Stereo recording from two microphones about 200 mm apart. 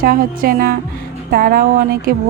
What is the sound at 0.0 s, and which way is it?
Speech, 45° right (ahead or behind).